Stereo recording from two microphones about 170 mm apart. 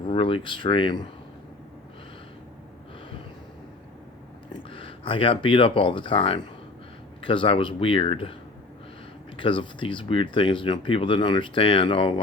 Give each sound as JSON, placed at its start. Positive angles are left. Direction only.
{"t": 0.0, "sound": "speech", "side_deg": 35}
{"t": 4.7, "sound": "speech", "side_deg": 30}
{"t": 9.4, "sound": "speech", "side_deg": 30}